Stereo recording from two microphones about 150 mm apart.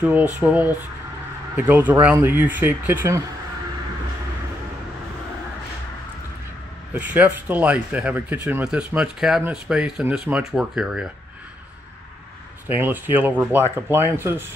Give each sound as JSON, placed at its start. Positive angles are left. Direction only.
{"t": 0.0, "sound": "speech", "side_deg": -10}
{"t": 6.9, "sound": "speech", "side_deg": -10}
{"t": 12.6, "sound": "speech", "side_deg": -15}